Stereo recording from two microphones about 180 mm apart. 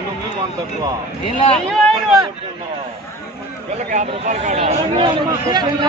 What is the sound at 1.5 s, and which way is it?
Speech, 5° left (ahead or behind).